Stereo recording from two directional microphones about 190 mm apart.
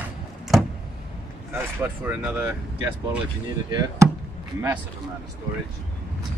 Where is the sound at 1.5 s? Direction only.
10° right (ahead or behind).